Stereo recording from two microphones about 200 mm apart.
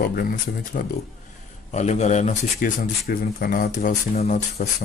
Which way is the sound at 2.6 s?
50° left (ahead or behind).